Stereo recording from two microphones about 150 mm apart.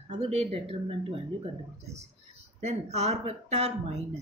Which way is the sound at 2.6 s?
45° right (ahead or behind).